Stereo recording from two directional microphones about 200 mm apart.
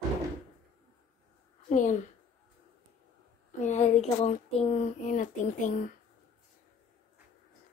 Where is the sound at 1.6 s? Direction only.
40° left (ahead or behind).